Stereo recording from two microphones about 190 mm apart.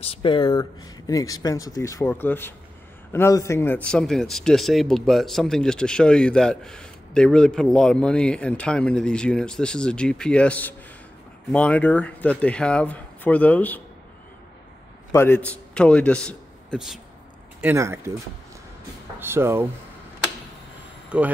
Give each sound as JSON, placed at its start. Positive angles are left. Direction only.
{"t": 0.0, "sound": "speech", "side_deg": 30}
{"t": 15.1, "sound": "a man's voice", "side_deg": 10}
{"t": 17.6, "sound": "speech", "side_deg": -10}
{"t": 19.1, "sound": "speech", "side_deg": -10}
{"t": 21.1, "sound": "speech", "side_deg": -5}